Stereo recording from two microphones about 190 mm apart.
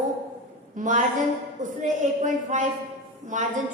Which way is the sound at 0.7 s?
40° right (ahead or behind).